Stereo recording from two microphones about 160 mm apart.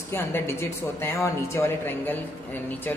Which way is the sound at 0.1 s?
15° left (ahead or behind).